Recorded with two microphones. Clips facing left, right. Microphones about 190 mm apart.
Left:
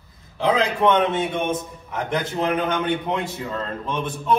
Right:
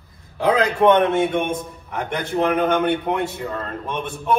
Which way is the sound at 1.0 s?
55° right (ahead or behind).